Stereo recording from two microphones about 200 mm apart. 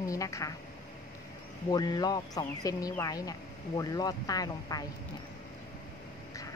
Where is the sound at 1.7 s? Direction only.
20° left (ahead or behind).